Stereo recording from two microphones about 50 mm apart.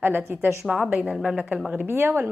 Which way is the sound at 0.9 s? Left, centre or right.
Centre.